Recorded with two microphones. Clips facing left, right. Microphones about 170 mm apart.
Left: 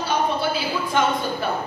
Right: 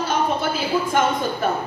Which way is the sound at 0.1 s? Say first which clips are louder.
Left 1 dB; 45° right (ahead or behind).